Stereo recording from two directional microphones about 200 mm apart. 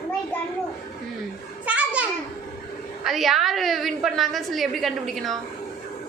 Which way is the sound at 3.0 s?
Centre (ahead or behind).